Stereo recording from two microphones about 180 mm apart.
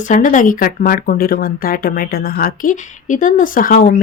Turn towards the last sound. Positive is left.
turn(degrees=50)  # may be behind; listen again after turning